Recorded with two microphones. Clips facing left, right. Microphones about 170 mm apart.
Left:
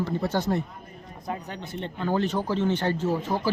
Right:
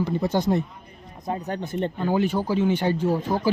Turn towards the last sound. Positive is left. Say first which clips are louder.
# right 3 dB
turn(degrees=-10)  # may be behind; listen again after turning